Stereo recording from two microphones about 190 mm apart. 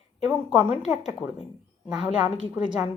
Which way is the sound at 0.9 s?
5° right (ahead or behind).